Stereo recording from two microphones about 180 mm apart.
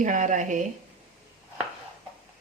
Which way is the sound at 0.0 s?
45° right (ahead or behind).